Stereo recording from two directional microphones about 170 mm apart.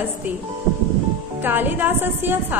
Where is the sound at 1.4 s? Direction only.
10° right (ahead or behind).